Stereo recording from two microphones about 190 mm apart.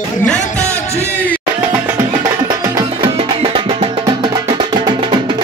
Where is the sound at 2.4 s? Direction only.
20° right (ahead or behind).